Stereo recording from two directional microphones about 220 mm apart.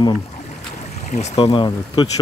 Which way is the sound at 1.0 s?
30° left (ahead or behind).